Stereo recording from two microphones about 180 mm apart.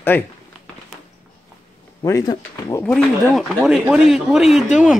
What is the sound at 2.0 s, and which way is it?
Speech, 20° left (ahead or behind).